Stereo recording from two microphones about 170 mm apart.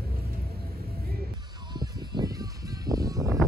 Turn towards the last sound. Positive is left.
turn(degrees=-20)  # may be behind; listen again after turning